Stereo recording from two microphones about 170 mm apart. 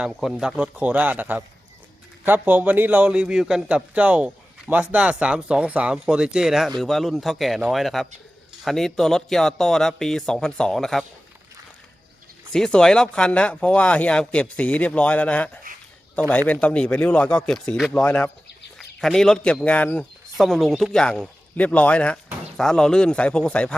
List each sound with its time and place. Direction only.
0.0 s a man's voice: centre (ahead or behind)
12.5 s speech: 5° left (ahead or behind)
15.7 s a sound: 55° right (ahead or behind)
16.3 s a man's voice: 10° left (ahead or behind)